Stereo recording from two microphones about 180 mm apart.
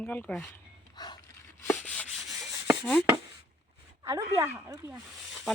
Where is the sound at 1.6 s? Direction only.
10° left (ahead or behind).